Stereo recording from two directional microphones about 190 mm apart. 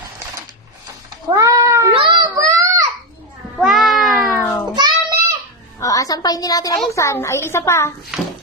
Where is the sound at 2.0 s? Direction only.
20° right (ahead or behind).